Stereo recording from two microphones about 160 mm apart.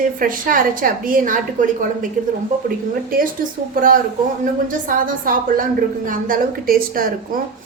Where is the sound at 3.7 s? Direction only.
60° right (ahead or behind).